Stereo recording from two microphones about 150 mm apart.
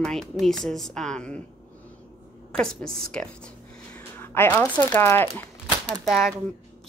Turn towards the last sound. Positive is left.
turn(degrees=0)  # may be behind; listen again after turning